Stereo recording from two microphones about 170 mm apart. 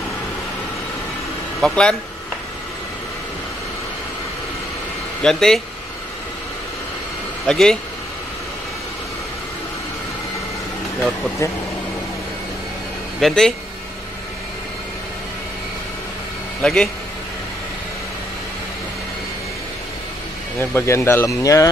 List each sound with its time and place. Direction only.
1.6 s speech: 5° left (ahead or behind)
5.2 s speech: 5° left (ahead or behind)
7.4 s speech: 5° left (ahead or behind)
13.2 s speech: centre (ahead or behind)
16.6 s speech: 5° left (ahead or behind)
20.5 s speech: 15° left (ahead or behind)